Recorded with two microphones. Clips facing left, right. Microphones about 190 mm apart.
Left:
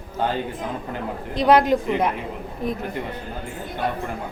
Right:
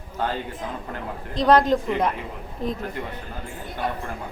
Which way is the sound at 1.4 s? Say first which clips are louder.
Left 1 dB; 5° left (ahead or behind).